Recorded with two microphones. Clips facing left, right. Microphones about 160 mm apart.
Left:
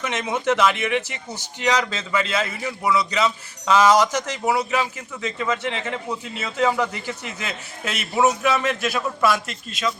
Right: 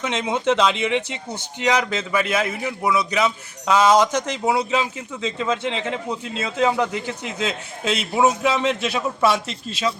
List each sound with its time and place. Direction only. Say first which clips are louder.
0.0 s a man's voice: right 2 dB; 15° right (ahead or behind)